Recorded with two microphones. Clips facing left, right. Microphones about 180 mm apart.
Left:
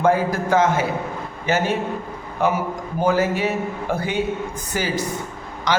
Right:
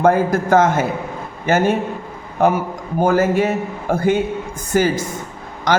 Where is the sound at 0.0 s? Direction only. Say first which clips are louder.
Right 4 dB; 50° right (ahead or behind).